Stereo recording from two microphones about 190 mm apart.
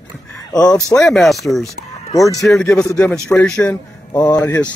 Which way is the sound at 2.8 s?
15° left (ahead or behind).